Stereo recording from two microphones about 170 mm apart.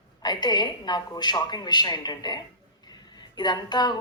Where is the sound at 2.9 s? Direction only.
25° left (ahead or behind).